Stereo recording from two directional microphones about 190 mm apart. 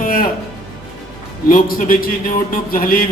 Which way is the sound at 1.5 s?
45° left (ahead or behind).